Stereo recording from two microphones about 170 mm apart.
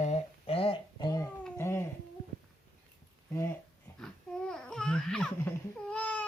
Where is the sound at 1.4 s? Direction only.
15° left (ahead or behind).